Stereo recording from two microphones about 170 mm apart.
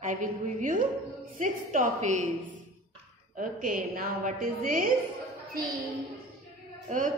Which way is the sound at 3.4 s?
55° right (ahead or behind).